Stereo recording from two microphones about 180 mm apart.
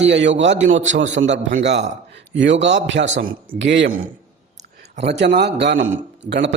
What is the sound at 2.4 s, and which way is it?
A man's voice, 80° right.